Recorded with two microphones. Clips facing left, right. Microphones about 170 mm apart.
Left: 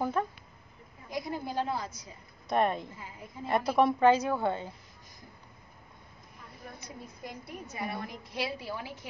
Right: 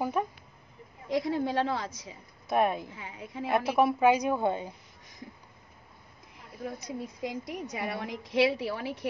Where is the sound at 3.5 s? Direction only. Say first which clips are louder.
Even; 5° right (ahead or behind).